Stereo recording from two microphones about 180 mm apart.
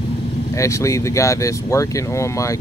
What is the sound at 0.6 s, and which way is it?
Speech, 15° left (ahead or behind).